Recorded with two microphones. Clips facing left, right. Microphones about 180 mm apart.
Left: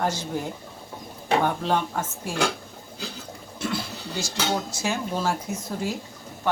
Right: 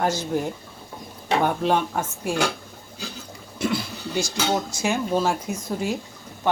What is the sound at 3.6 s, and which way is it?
Television, 15° right (ahead or behind).